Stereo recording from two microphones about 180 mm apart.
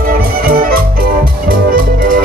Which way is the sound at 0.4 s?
55° right (ahead or behind).